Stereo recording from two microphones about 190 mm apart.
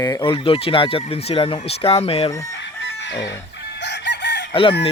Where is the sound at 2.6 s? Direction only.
65° left (ahead or behind).